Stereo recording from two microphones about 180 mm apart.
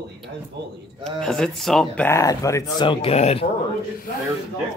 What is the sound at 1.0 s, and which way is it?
Speech, 5° left (ahead or behind).